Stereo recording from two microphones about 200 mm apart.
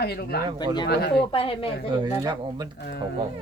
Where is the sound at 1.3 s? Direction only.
25° left (ahead or behind).